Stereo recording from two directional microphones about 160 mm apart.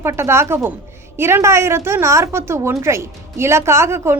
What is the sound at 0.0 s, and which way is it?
A woman's voice, 15° right (ahead or behind).